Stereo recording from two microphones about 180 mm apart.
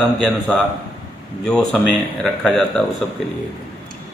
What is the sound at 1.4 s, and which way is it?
A man's voice, 5° left (ahead or behind).